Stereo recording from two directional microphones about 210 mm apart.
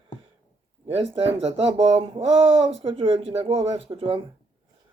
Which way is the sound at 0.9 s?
30° right (ahead or behind).